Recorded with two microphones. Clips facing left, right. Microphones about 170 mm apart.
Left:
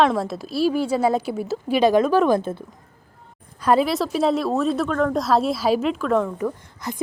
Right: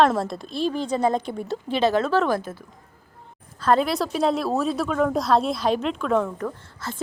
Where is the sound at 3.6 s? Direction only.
10° left (ahead or behind).